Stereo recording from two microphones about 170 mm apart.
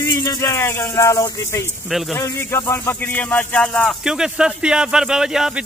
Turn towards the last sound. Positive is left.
turn(degrees=-5)  # may be behind; listen again after turning